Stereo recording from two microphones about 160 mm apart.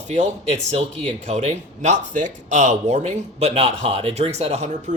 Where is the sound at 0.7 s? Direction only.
40° right (ahead or behind).